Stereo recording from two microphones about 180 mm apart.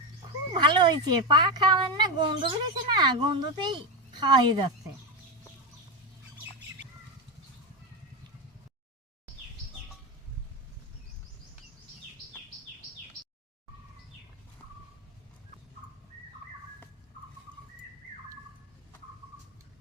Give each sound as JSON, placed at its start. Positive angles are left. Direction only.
{"t": 0.5, "sound": "a woman's voice", "side_deg": -25}